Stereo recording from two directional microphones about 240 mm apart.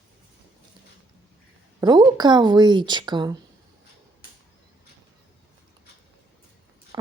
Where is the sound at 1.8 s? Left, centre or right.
Centre.